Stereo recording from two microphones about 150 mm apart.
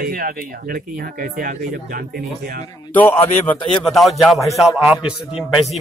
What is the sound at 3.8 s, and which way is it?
A man's voice, centre (ahead or behind).